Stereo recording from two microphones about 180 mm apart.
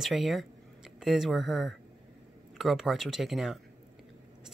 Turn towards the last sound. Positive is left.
turn(degrees=0)  # may be behind; listen again after turning